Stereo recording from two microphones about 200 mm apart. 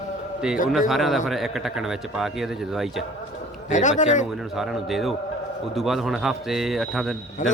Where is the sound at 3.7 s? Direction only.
40° left (ahead or behind).